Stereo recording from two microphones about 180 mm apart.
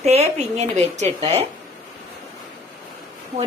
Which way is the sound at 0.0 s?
35° right (ahead or behind).